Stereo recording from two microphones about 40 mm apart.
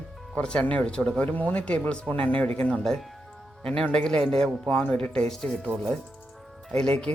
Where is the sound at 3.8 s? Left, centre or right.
Left.